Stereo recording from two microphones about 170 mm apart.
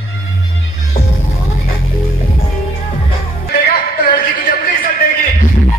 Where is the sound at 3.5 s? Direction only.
60° left (ahead or behind).